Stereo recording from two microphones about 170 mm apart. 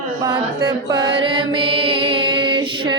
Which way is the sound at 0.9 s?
30° right (ahead or behind).